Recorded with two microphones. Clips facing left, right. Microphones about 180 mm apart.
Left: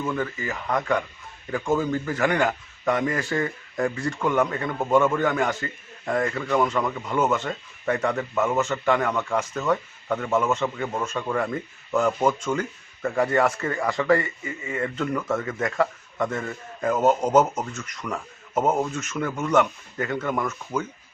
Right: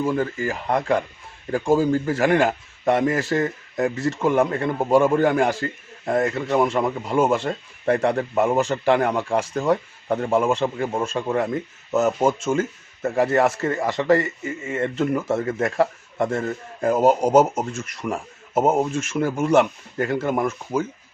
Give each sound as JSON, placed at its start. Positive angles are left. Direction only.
{"t": 0.0, "sound": "a man's voice", "side_deg": -30}
{"t": 17.0, "sound": "speech", "side_deg": -10}
{"t": 17.7, "sound": "speech", "side_deg": -25}